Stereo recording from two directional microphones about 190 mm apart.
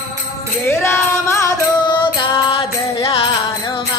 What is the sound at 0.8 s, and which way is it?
Music, 15° left (ahead or behind).